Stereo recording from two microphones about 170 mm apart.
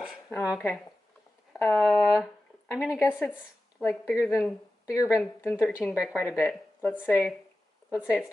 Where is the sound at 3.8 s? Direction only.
15° left (ahead or behind).